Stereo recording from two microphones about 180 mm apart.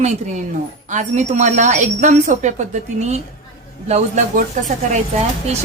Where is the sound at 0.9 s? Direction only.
40° right (ahead or behind).